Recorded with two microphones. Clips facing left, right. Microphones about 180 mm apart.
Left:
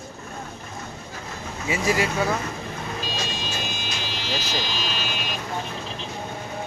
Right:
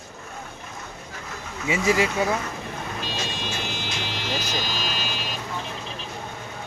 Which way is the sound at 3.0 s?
60° right (ahead or behind).